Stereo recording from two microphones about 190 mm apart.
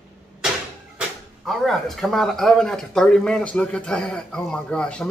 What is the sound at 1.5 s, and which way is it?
Speech, centre (ahead or behind).